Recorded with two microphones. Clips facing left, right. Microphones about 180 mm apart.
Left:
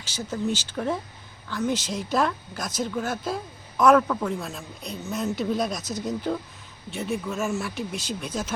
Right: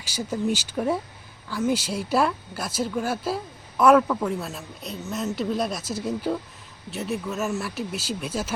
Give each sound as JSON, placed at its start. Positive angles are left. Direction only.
{"t": 0.2, "sound": "speech", "side_deg": -10}